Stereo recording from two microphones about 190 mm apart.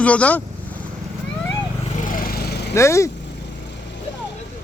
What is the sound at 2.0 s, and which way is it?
Lawn mower, 50° left (ahead or behind).